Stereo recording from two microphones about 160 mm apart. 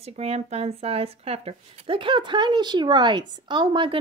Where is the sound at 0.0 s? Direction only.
40° right (ahead or behind).